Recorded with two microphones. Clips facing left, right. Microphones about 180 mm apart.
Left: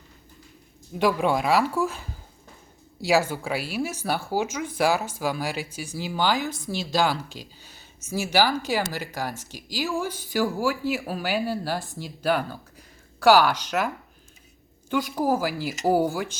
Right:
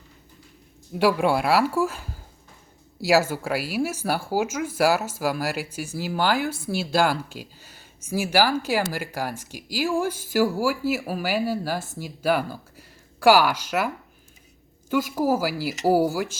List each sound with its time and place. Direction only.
0.9 s speech: 10° right (ahead or behind)